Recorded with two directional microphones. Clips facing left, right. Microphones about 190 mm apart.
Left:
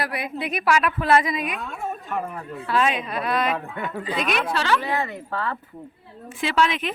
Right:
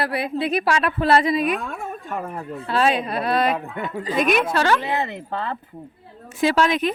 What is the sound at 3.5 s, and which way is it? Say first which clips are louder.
Speech: right 2 dB; 20° right (ahead or behind).